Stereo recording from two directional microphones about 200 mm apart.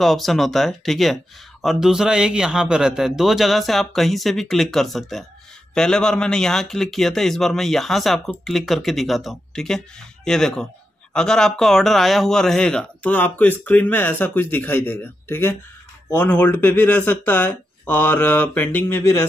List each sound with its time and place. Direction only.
0.0 s a man's voice: centre (ahead or behind)